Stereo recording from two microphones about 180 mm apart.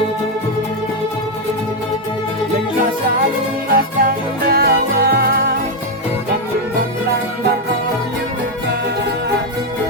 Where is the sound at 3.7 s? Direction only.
55° right (ahead or behind).